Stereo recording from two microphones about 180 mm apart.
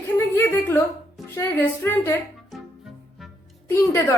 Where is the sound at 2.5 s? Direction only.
Centre (ahead or behind).